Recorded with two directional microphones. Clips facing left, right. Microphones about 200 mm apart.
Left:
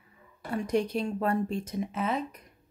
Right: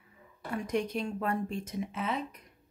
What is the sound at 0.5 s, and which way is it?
Speech, 35° left (ahead or behind).